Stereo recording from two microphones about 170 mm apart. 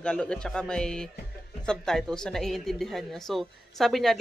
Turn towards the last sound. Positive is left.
turn(degrees=0)  # may be behind; listen again after turning